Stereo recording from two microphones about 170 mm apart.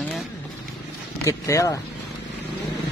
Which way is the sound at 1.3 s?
20° left (ahead or behind).